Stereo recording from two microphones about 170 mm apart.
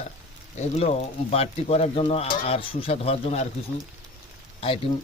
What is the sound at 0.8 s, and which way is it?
Speech, 40° left (ahead or behind).